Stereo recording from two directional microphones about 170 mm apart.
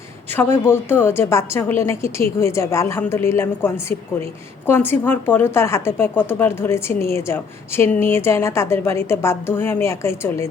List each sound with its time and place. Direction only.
0.3 s a woman's voice: 15° left (ahead or behind)